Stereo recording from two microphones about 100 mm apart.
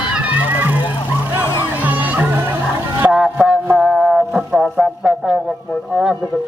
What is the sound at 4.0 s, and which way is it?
Music, 10° right (ahead or behind).